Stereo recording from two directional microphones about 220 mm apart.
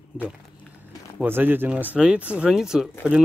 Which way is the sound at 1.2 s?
10° right (ahead or behind).